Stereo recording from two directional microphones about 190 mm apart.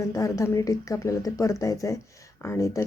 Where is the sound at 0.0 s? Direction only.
15° left (ahead or behind).